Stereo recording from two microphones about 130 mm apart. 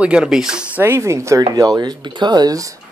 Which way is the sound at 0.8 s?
20° right (ahead or behind).